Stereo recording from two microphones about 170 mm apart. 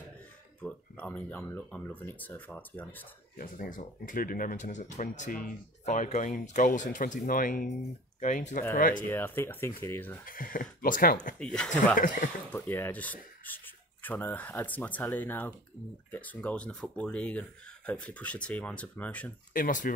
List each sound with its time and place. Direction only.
0.6 s speech: 10° left (ahead or behind)
3.3 s speech: 55° left (ahead or behind)
9.0 s speech: 10° left (ahead or behind)
10.2 s speech: 55° left (ahead or behind)
11.3 s speech: 5° left (ahead or behind)
19.5 s speech: 50° left (ahead or behind)